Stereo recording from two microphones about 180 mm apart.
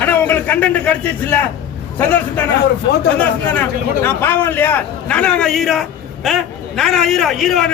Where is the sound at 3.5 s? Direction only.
10° left (ahead or behind).